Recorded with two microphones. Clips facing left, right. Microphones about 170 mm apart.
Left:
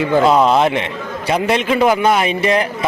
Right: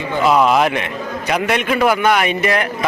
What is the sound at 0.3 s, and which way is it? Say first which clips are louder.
A man's voice: right 3 dB; 30° left (ahead or behind).